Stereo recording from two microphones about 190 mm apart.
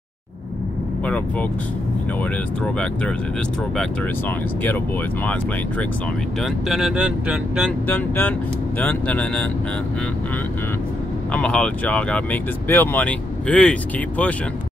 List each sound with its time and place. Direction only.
2.6 s speech: 5° left (ahead or behind)
5.2 s speech: 5° left (ahead or behind)
7.9 s speech: 10° left (ahead or behind)
11.3 s speech: 5° left (ahead or behind)